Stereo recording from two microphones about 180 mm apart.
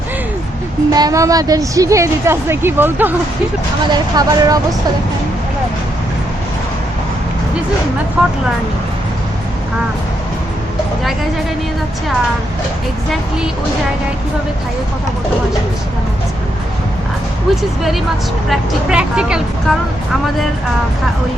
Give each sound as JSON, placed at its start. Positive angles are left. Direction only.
{"t": 0.9, "sound": "a woman's voice", "side_deg": -20}
{"t": 3.9, "sound": "speech", "side_deg": -20}
{"t": 8.2, "sound": "speech", "side_deg": -5}
{"t": 17.6, "sound": "speech", "side_deg": 0}